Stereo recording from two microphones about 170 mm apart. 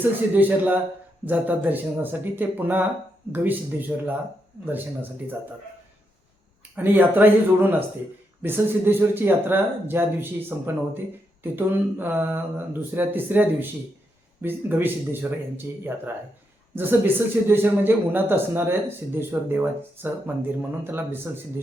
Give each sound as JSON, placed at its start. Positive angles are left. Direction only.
{"t": 0.0, "sound": "speech", "side_deg": -10}
{"t": 6.7, "sound": "speech", "side_deg": -10}